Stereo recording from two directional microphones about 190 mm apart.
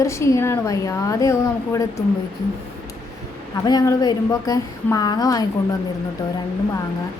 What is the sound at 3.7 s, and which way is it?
A woman's voice, 20° left (ahead or behind).